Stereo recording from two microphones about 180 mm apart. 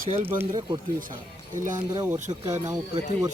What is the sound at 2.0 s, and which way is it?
Speech, 10° right (ahead or behind).